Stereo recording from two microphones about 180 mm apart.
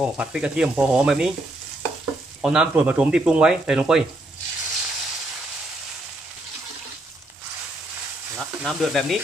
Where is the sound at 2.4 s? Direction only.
5° right (ahead or behind).